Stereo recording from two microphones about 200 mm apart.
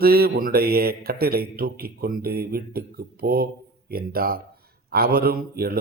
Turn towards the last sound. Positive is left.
turn(degrees=-50)  # may be behind; listen again after turning